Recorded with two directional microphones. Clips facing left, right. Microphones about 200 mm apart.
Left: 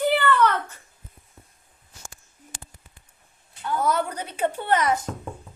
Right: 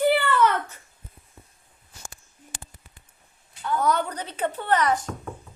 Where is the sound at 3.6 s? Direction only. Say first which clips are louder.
Even; 5° left (ahead or behind).